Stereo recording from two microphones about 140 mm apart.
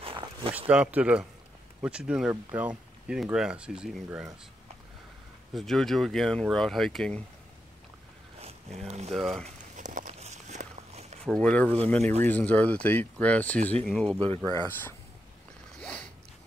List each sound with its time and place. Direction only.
0.0 s zipper: 40° right (ahead or behind)
0.6 s speech: 10° right (ahead or behind)
5.5 s speech: centre (ahead or behind)
8.4 s boat: 50° right (ahead or behind)
9.1 s speech: centre (ahead or behind)
9.8 s walk: 65° right (ahead or behind)
11.2 s speech: 5° left (ahead or behind)
12.0 s speech: 50° right (ahead or behind)
12.3 s speech: 10° left (ahead or behind)
14.4 s speech: 30° right (ahead or behind)
14.7 s speech: 15° left (ahead or behind)
15.8 s a sound: 5° left (ahead or behind)